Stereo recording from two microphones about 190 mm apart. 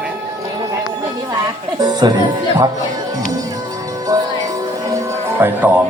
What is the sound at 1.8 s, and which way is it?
Music, 20° right (ahead or behind).